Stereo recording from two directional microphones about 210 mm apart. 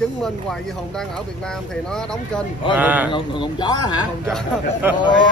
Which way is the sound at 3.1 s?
25° left (ahead or behind).